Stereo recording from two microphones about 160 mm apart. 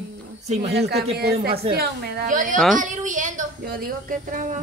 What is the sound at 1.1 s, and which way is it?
A woman's voice, 80° right.